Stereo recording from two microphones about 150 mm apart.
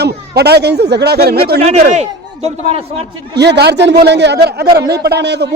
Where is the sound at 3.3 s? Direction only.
90° right.